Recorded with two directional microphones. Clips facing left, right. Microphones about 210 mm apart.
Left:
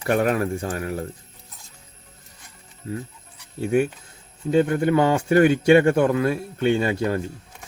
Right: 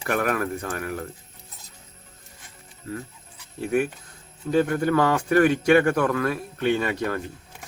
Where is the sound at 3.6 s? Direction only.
25° left (ahead or behind).